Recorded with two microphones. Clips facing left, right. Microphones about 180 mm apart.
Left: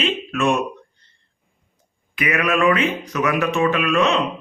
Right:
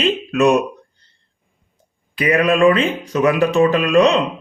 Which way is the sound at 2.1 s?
30° right (ahead or behind).